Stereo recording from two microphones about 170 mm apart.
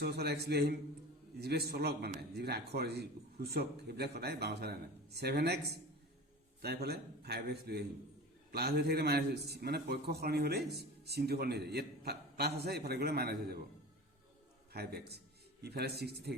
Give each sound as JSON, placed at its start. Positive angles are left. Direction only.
{"t": 0.0, "sound": "a man's voice", "side_deg": -70}
{"t": 6.6, "sound": "a man's voice", "side_deg": -65}
{"t": 14.7, "sound": "a man's voice", "side_deg": -70}